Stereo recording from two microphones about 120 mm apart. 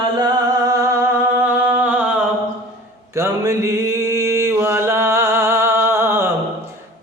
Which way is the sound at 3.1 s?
25° right (ahead or behind).